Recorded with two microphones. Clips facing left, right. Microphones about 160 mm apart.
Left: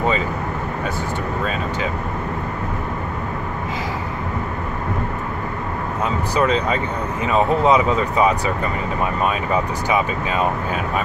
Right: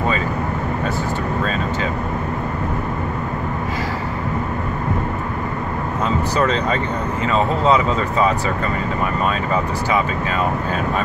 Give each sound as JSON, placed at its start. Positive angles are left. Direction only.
{"t": 6.3, "sound": "speech", "side_deg": 10}